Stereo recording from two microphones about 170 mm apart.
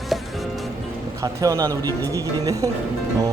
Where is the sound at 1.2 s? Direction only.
20° right (ahead or behind).